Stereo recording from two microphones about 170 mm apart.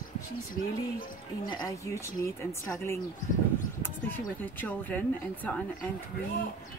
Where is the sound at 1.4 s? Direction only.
20° left (ahead or behind).